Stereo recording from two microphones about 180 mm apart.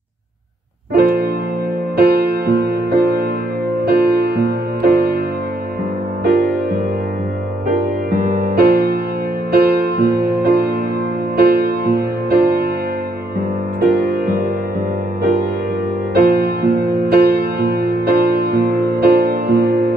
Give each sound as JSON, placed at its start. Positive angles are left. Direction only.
{"t": 0.9, "sound": "music", "side_deg": -60}
{"t": 7.7, "sound": "music", "side_deg": -45}
{"t": 13.7, "sound": "music", "side_deg": -50}
{"t": 16.2, "sound": "music", "side_deg": -60}